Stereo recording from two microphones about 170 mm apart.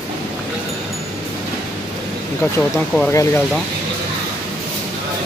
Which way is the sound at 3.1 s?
20° left (ahead or behind).